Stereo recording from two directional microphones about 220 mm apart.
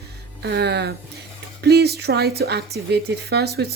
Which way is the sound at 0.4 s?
50° right (ahead or behind).